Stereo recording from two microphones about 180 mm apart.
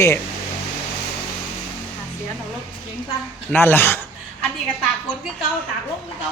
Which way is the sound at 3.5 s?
10° left (ahead or behind).